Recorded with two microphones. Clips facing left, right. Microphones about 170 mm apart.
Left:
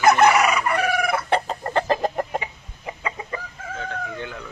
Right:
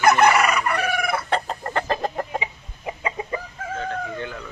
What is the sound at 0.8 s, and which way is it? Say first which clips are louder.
Chicken: left 2 dB; centre (ahead or behind).